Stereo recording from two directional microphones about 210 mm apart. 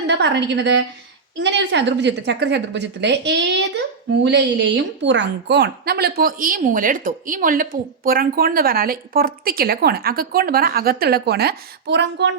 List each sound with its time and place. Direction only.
0.1 s a woman's voice: 55° right (ahead or behind)